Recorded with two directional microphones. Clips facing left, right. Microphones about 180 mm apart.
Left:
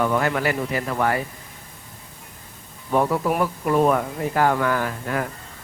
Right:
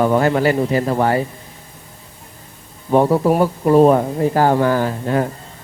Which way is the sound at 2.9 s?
30° right (ahead or behind).